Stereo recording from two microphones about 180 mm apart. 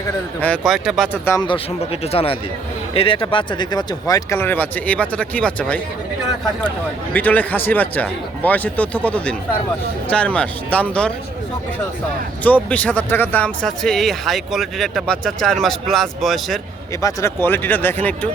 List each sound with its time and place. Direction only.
0.4 s speech: 5° left (ahead or behind)
1.5 s speech: 30° left (ahead or behind); by 5.8 s 5° left (ahead or behind)
7.1 s speech: 10° left (ahead or behind)
12.4 s speech: 10° left (ahead or behind)
17.0 s speech: 20° left (ahead or behind)